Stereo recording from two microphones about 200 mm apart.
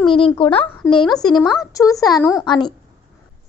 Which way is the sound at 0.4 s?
25° left (ahead or behind).